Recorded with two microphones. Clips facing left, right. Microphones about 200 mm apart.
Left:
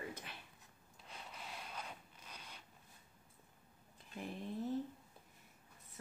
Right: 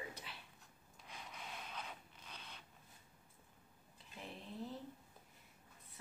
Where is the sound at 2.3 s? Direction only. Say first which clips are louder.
Even; 10° left (ahead or behind).